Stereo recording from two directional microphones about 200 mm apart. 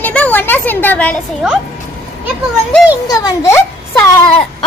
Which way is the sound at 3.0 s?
15° left (ahead or behind).